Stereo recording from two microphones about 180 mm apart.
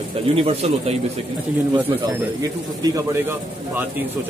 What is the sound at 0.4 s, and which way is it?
Speech, 35° right (ahead or behind).